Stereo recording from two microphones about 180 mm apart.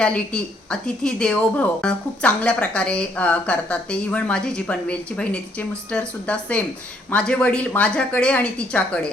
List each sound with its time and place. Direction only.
0.0 s speech: 5° left (ahead or behind)